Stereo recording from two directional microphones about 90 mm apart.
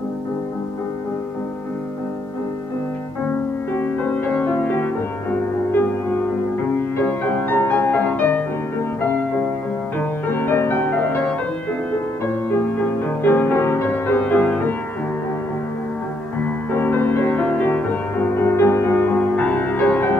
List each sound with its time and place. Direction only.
3.3 s music: 20° left (ahead or behind)
7.0 s music: 20° left (ahead or behind)
9.9 s music: 20° left (ahead or behind)
13.2 s music: 20° left (ahead or behind)
16.7 s music: 25° left (ahead or behind)